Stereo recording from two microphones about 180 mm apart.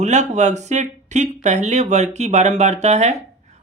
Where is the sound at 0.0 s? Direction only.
40° right (ahead or behind).